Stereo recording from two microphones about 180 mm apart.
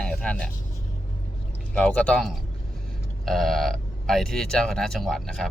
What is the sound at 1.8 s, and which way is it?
Speech, 5° left (ahead or behind).